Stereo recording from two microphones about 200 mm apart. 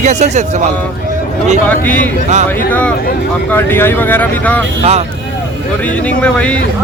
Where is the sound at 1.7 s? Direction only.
5° left (ahead or behind).